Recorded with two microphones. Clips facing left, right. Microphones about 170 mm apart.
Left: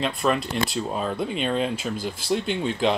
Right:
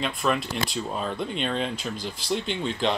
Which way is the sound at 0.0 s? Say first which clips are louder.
Left 2 dB; centre (ahead or behind).